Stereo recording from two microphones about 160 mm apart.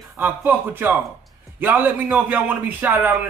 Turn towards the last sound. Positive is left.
turn(degrees=-10)  # may be behind; listen again after turning